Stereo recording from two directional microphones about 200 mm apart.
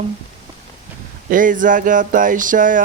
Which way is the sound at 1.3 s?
40° right (ahead or behind).